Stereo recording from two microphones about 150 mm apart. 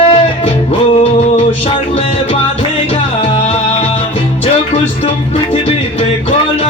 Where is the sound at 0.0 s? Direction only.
40° left (ahead or behind).